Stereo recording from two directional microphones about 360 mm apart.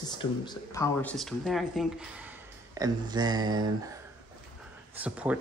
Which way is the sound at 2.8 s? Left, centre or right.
Centre.